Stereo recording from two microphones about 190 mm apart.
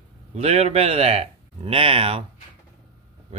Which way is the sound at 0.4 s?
30° right (ahead or behind).